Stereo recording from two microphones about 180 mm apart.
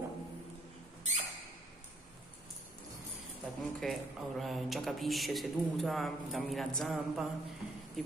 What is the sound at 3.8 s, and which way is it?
Speech, centre (ahead or behind).